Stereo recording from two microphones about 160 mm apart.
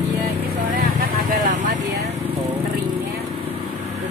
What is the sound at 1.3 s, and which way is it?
Vehicle, 55° right (ahead or behind).